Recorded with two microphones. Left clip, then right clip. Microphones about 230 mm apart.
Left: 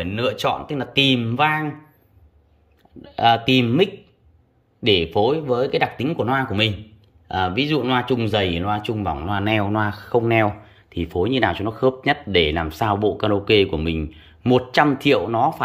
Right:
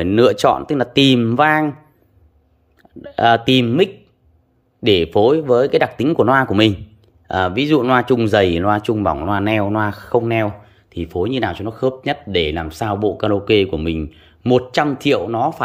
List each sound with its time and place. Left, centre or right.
0.0 s speech: right
3.0 s speech: centre